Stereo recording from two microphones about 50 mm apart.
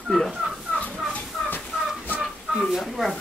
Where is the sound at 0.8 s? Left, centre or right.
Left.